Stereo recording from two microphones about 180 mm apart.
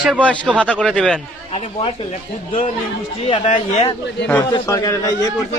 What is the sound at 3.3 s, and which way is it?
Speech, 35° left (ahead or behind).